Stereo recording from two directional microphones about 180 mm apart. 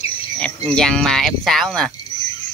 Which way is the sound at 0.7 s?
5° left (ahead or behind).